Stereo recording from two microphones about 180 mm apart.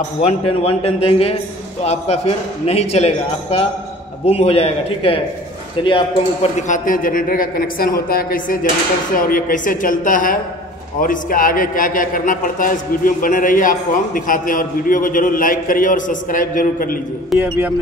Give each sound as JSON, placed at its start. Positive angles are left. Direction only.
{"t": 0.2, "sound": "a man's voice", "side_deg": 35}
{"t": 6.7, "sound": "a man's voice", "side_deg": 50}
{"t": 17.4, "sound": "speech", "side_deg": -10}